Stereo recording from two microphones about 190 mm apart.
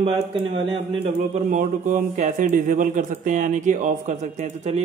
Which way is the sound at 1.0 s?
40° right (ahead or behind).